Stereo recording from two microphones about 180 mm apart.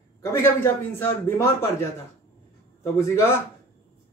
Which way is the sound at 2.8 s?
15° left (ahead or behind).